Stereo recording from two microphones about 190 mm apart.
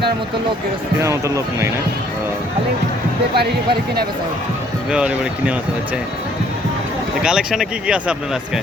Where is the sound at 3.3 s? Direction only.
55° right (ahead or behind).